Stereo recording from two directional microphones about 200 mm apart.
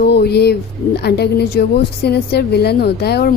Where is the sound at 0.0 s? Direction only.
55° left (ahead or behind).